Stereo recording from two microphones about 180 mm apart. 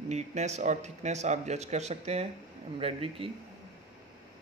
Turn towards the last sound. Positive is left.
turn(degrees=-30)  # may be behind; listen again after turning